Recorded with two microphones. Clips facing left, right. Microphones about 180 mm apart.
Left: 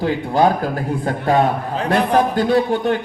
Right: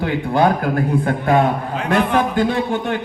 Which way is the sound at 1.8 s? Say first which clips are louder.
Left 2 dB; 35° left (ahead or behind).